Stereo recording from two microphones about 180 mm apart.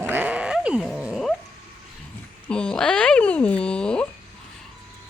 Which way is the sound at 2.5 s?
5° left (ahead or behind).